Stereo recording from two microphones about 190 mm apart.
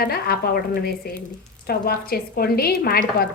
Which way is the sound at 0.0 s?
55° left (ahead or behind).